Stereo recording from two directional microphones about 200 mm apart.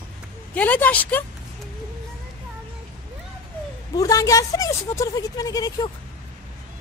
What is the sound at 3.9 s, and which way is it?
A woman's voice, 15° left (ahead or behind).